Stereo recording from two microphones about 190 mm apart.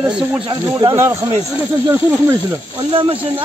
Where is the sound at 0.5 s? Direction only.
25° right (ahead or behind).